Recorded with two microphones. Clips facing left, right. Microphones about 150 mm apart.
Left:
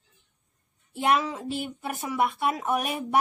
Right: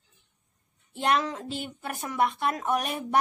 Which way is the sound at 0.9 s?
5° left (ahead or behind).